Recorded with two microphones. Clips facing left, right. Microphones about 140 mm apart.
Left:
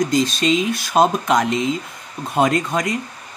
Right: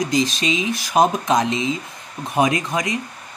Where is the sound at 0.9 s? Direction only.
15° right (ahead or behind).